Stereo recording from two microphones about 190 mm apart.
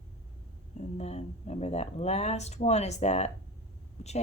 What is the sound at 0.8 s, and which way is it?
Speech, 35° left (ahead or behind).